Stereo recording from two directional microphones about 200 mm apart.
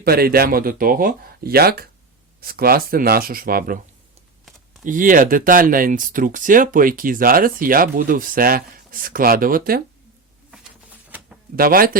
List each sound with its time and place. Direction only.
0.0 s speech: 50° right (ahead or behind)
4.8 s speech: 40° right (ahead or behind)
11.5 s speech: 45° right (ahead or behind)